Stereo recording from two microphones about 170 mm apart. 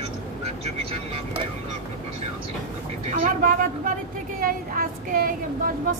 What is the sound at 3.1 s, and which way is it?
Speech, 50° right (ahead or behind).